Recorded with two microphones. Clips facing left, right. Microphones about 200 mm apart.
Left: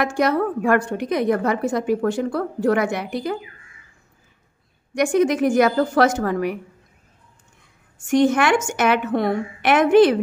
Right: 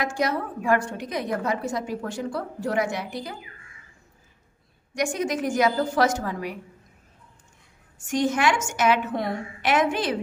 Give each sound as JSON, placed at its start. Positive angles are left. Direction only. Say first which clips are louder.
{"t": 0.0, "sound": "a woman's voice", "louder": "left 6 dB", "side_deg": 60}
{"t": 4.9, "sound": "a woman's voice", "louder": "left 8 dB", "side_deg": 60}
{"t": 8.1, "sound": "a woman's voice", "louder": "left 6 dB", "side_deg": 60}